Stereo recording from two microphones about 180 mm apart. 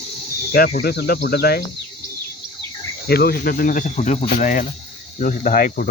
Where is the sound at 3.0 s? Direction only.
60° left (ahead or behind).